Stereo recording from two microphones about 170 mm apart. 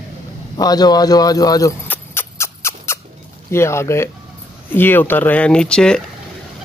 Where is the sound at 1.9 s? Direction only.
15° left (ahead or behind).